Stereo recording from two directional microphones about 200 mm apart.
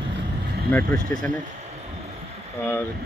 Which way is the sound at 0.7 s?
10° left (ahead or behind).